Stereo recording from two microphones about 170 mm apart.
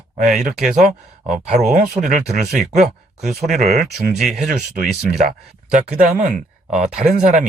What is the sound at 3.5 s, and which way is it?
Speech, 45° right (ahead or behind).